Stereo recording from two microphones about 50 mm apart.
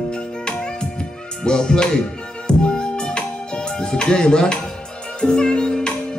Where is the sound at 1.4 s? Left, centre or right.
Centre.